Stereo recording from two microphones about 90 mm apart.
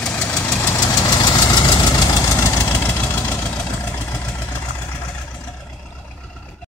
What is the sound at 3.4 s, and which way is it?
Vehicle, 10° left (ahead or behind).